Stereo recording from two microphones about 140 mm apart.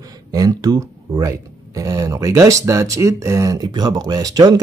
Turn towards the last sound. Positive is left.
turn(degrees=-25)  # may be behind; listen again after turning